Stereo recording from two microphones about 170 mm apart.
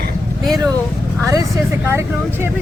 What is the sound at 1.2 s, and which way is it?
Speech, 20° right (ahead or behind).